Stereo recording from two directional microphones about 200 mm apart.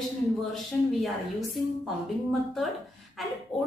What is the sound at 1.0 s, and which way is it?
Speech, centre (ahead or behind).